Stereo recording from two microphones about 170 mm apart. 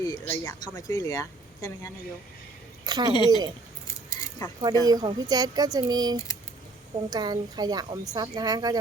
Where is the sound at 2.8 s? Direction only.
25° right (ahead or behind).